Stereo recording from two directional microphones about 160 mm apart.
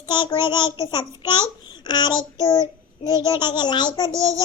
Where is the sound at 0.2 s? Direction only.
30° left (ahead or behind).